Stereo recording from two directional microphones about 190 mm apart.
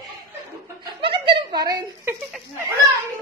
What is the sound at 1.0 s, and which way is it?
Giggle, 25° right (ahead or behind).